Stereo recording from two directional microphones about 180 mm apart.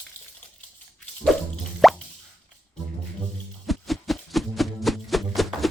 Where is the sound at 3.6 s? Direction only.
Centre (ahead or behind).